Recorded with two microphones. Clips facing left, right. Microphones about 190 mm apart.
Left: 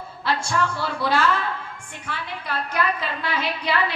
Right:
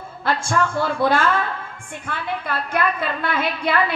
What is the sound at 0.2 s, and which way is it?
A woman's voice, 50° right (ahead or behind).